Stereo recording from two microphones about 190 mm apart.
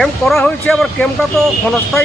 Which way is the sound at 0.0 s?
Centre (ahead or behind).